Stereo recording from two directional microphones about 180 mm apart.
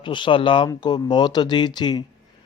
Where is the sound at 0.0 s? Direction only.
25° left (ahead or behind).